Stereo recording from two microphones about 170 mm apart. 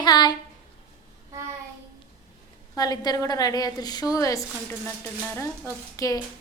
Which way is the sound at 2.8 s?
20° left (ahead or behind).